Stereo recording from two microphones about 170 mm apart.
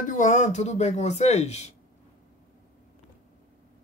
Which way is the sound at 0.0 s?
45° left (ahead or behind).